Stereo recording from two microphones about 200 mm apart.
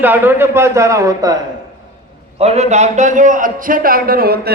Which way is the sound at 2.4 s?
30° right (ahead or behind).